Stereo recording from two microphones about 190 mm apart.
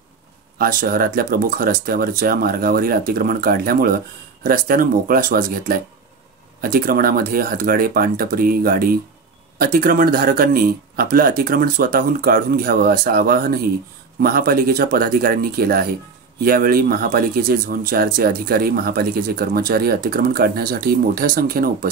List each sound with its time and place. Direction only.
0.6 s speech: 50° right (ahead or behind)